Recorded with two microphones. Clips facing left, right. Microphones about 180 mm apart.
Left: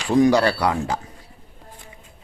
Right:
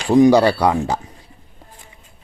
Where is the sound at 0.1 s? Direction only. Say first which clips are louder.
Right 5 dB; 25° right (ahead or behind).